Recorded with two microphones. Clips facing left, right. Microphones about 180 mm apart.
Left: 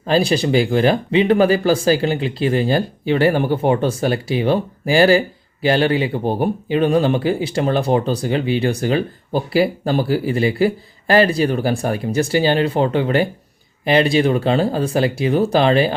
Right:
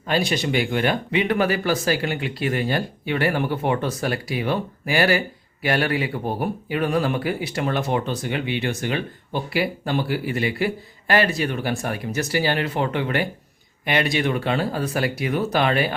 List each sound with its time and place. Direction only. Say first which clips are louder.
0.0 s speech: left 6 dB; 30° left (ahead or behind)